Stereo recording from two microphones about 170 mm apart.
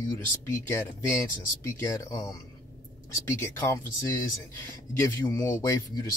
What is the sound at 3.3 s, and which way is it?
Speech, 15° left (ahead or behind).